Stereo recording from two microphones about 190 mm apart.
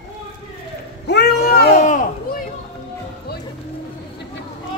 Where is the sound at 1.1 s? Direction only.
60° left (ahead or behind).